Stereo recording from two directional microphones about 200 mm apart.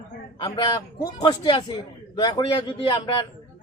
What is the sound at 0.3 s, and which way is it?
Speech, 25° left (ahead or behind).